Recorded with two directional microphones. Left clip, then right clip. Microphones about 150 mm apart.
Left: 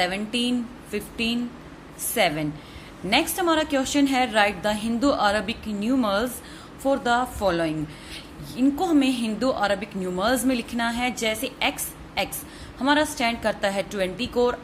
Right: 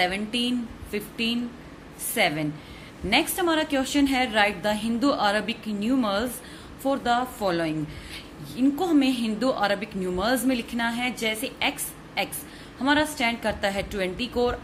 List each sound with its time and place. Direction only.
0.0 s a woman's voice: 20° left (ahead or behind)
12.8 s a woman's voice: 25° left (ahead or behind)